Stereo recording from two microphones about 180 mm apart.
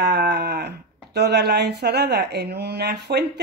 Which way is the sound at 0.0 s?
65° right (ahead or behind).